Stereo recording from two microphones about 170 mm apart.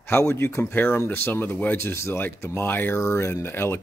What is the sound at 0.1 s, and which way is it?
Speech, 15° left (ahead or behind).